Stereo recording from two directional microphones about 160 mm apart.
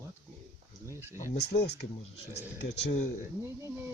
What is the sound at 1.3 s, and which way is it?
Speech, 90° left.